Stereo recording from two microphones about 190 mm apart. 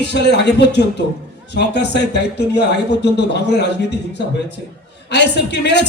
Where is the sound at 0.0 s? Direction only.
65° left (ahead or behind).